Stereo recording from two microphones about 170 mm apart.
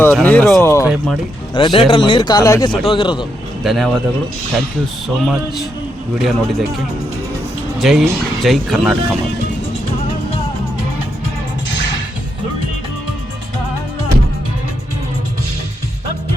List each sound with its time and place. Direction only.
0.1 s speech: 5° left (ahead or behind)
0.6 s speech: 15° left (ahead or behind)
1.5 s a man's voice: 30° left (ahead or behind)
3.6 s speech: centre (ahead or behind)
5.0 s speech: centre (ahead or behind)
7.8 s speech: centre (ahead or behind)